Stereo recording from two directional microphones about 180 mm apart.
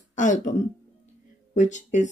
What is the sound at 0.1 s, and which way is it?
Speech, 45° left (ahead or behind).